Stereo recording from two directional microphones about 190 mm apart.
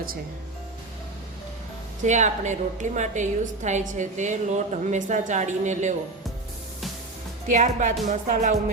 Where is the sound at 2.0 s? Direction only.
40° right (ahead or behind).